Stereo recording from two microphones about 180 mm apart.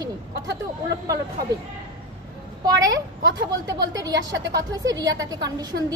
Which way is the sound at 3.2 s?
20° right (ahead or behind).